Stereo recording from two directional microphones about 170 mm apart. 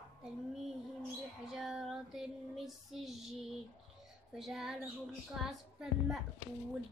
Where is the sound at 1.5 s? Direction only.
Centre (ahead or behind).